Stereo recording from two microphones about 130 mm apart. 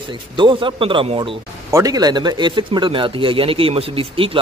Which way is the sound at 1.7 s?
25° right (ahead or behind).